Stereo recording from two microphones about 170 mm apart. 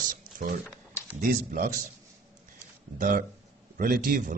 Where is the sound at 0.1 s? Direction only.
55° right (ahead or behind).